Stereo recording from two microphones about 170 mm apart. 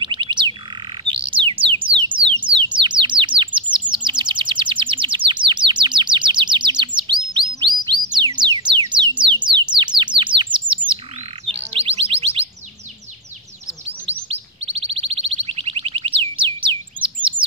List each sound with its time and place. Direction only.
0.0 s bird: 30° right (ahead or behind)
1.9 s a sound: 30° right (ahead or behind)
2.7 s bird: 30° right (ahead or behind)
7.0 s chirp: 25° right (ahead or behind)
7.9 s music: 25° right (ahead or behind)
11.4 s chirp tone: 35° right (ahead or behind)
14.6 s a sound: 35° right (ahead or behind)